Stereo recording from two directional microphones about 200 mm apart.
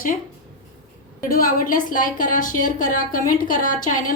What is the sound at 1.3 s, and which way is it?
A woman's voice, 45° left (ahead or behind).